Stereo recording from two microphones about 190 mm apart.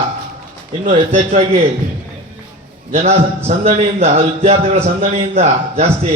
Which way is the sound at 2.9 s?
35° right (ahead or behind).